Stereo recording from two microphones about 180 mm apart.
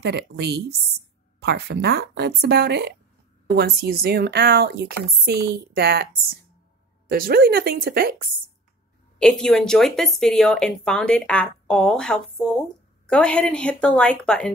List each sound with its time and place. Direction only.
0.0 s a woman's voice: 65° right (ahead or behind)
7.1 s a woman's voice: 55° right (ahead or behind)
9.2 s a woman's voice: 5° left (ahead or behind)